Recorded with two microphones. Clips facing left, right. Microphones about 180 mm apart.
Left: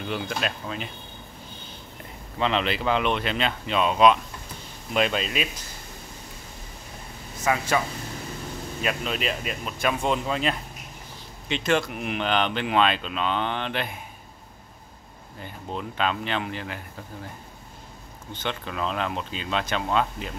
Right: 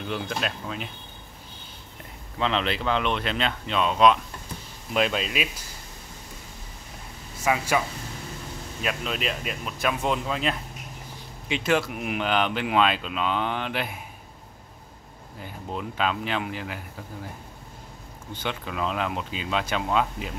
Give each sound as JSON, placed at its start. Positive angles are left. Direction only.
{"t": 0.0, "sound": "speech", "side_deg": 0}
{"t": 2.3, "sound": "speech", "side_deg": 0}
{"t": 7.4, "sound": "speech", "side_deg": -10}
{"t": 8.8, "sound": "speech", "side_deg": 0}
{"t": 15.4, "sound": "speech", "side_deg": -5}
{"t": 18.3, "sound": "speech", "side_deg": -10}